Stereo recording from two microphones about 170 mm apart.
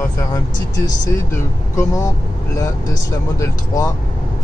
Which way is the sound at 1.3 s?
20° left (ahead or behind).